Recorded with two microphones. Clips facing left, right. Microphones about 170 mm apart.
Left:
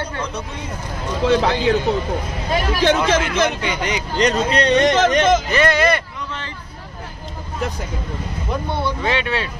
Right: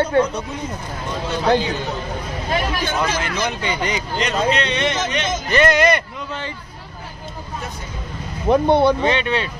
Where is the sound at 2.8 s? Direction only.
90° left.